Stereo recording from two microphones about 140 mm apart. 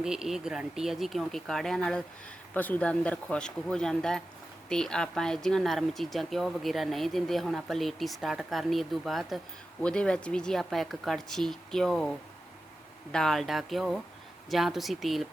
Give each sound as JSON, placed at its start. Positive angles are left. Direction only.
{"t": 0.0, "sound": "speech", "side_deg": -5}